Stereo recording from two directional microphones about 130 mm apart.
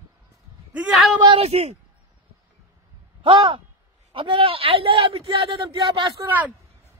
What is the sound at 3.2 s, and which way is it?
A man's voice, 40° right (ahead or behind).